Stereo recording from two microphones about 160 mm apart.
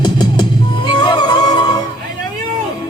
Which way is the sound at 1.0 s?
30° left (ahead or behind).